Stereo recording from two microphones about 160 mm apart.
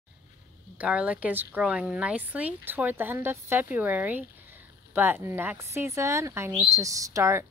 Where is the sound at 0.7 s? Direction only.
5° right (ahead or behind).